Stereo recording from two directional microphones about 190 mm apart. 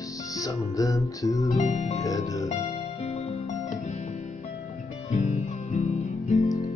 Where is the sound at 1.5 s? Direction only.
40° left (ahead or behind).